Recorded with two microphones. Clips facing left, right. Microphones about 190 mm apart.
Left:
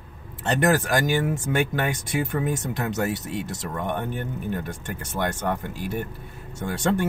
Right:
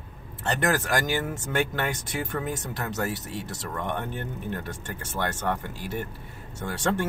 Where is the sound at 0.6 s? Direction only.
15° left (ahead or behind).